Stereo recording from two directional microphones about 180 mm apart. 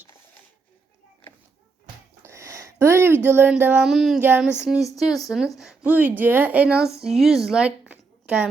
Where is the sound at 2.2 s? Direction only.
15° right (ahead or behind).